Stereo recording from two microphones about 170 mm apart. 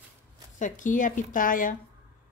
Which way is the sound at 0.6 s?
50° left (ahead or behind).